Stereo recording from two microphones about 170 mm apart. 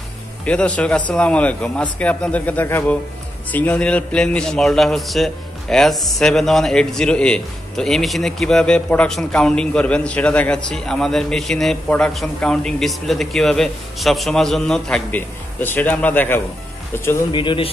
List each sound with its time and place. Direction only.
0.5 s a man's voice: 5° left (ahead or behind)
17.3 s speech: 30° left (ahead or behind)